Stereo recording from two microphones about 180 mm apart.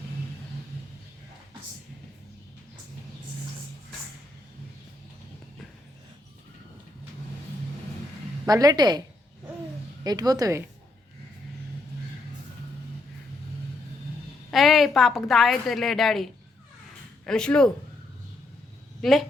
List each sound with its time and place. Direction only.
8.4 s a woman's voice: 20° right (ahead or behind)
14.5 s a woman's voice: centre (ahead or behind)